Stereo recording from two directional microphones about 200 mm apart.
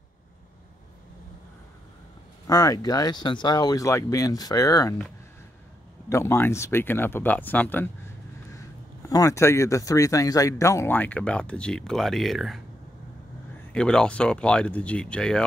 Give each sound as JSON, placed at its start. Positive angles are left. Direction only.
{"t": 2.4, "sound": "speech", "side_deg": 20}
{"t": 6.0, "sound": "speech", "side_deg": 15}
{"t": 9.0, "sound": "speech", "side_deg": 15}
{"t": 13.7, "sound": "speech", "side_deg": 5}